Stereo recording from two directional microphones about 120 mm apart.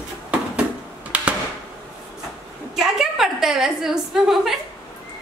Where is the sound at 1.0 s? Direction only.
10° right (ahead or behind).